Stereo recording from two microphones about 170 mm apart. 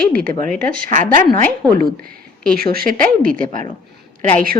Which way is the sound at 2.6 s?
60° right (ahead or behind).